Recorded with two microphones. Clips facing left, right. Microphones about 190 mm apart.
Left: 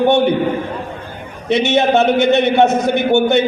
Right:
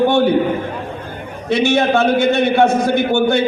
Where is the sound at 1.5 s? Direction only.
20° left (ahead or behind).